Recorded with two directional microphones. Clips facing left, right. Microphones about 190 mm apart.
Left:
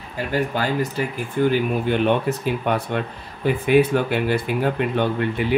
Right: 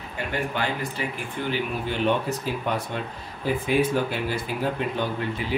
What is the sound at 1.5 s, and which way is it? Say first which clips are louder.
Speech: left 7 dB; 55° left (ahead or behind).